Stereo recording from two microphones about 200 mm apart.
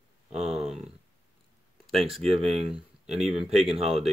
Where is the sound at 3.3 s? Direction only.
30° right (ahead or behind).